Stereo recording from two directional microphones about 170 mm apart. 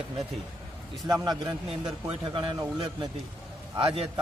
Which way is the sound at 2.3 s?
30° right (ahead or behind).